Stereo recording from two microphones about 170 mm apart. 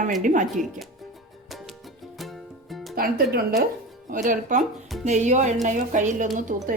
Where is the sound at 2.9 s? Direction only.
60° right (ahead or behind).